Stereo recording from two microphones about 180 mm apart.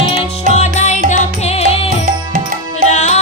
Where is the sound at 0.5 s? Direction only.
40° left (ahead or behind).